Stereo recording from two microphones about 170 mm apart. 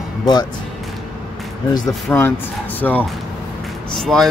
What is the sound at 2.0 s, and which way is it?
Speech, 10° left (ahead or behind).